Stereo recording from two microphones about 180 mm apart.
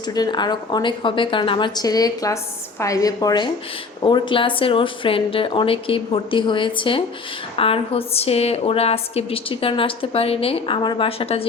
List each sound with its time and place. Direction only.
0.1 s a woman's voice: 25° left (ahead or behind)